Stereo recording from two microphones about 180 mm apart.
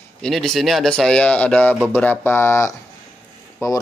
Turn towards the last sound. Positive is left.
turn(degrees=15)  # may be behind; listen again after turning